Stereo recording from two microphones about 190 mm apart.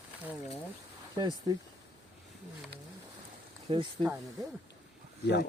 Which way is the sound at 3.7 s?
30° right (ahead or behind).